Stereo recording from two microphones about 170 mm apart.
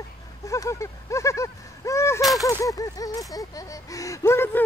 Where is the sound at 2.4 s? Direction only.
20° left (ahead or behind).